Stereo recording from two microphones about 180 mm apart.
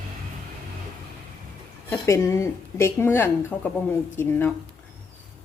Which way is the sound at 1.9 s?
15° left (ahead or behind).